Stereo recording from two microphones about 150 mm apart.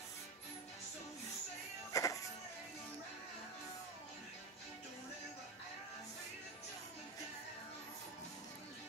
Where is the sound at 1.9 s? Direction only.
20° left (ahead or behind).